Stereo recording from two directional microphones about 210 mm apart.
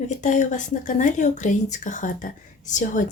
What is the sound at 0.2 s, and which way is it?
Speech, 35° left (ahead or behind).